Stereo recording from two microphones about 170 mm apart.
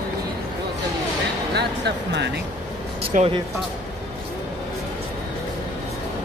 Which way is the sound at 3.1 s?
50° right (ahead or behind).